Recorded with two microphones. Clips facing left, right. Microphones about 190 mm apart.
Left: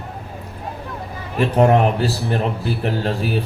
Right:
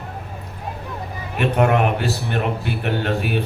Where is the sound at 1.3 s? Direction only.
30° left (ahead or behind).